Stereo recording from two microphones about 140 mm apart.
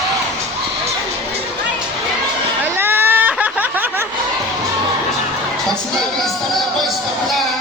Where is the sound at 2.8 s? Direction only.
15° right (ahead or behind).